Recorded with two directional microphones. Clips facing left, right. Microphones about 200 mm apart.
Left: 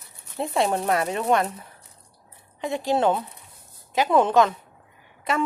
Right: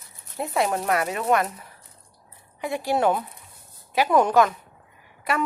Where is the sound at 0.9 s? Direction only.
Centre (ahead or behind).